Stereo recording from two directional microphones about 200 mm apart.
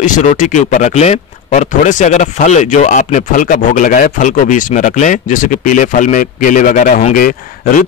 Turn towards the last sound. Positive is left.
turn(degrees=40)  # may be behind; listen again after turning